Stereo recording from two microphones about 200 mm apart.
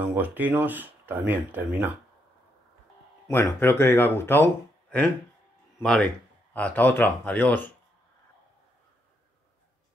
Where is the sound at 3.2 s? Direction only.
15° left (ahead or behind).